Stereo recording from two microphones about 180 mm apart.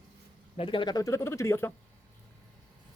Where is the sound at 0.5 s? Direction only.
30° left (ahead or behind).